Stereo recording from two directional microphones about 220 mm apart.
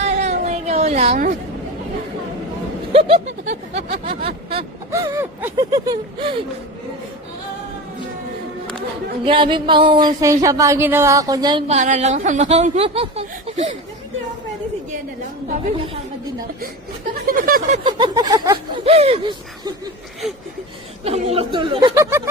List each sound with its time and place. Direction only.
0.0 s a sound: 30° right (ahead or behind)
2.9 s speech: 25° right (ahead or behind)
4.9 s speech: 15° right (ahead or behind)
9.2 s speech: 20° right (ahead or behind)
11.8 s speech: 30° right (ahead or behind)
17.2 s speech: 40° right (ahead or behind)
17.8 s speech: 20° right (ahead or behind)
21.0 s speech: 25° right (ahead or behind)